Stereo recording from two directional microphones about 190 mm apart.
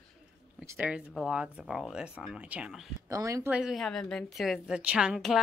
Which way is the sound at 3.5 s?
Centre (ahead or behind).